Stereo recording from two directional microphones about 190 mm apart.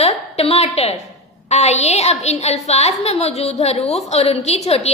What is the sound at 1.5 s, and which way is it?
A woman's voice, 35° left (ahead or behind).